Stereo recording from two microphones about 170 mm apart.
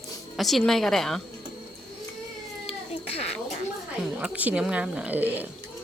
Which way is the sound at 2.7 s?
35° left (ahead or behind).